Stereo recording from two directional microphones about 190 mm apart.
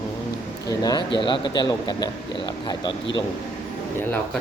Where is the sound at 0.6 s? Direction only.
20° left (ahead or behind).